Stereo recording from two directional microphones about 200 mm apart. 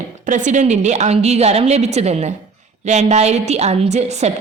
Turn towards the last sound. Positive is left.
turn(degrees=-35)  # may be behind; listen again after turning